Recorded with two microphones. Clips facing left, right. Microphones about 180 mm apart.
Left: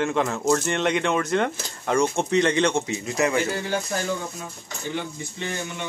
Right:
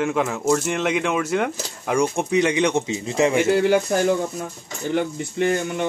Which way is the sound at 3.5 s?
75° right (ahead or behind).